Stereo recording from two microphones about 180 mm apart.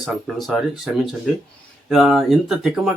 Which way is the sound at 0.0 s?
Centre (ahead or behind).